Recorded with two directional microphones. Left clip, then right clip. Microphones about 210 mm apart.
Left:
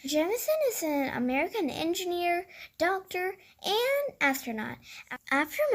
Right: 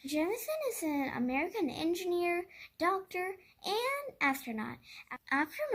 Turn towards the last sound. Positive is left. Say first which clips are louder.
# left 6 dB
turn(degrees=30)  # may be behind; listen again after turning